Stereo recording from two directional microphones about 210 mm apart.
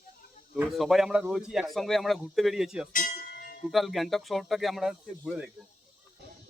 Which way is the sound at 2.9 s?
40° left (ahead or behind).